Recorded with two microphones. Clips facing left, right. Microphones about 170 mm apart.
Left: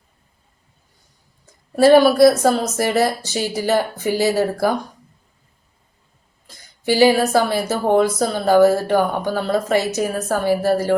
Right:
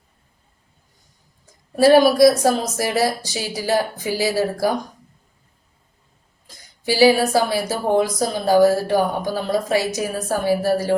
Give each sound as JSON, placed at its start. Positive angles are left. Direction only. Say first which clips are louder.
{"t": 1.7, "sound": "a woman's voice", "louder": "left 1 dB", "side_deg": -15}
{"t": 6.9, "sound": "a woman's voice", "louder": "left 1 dB", "side_deg": -10}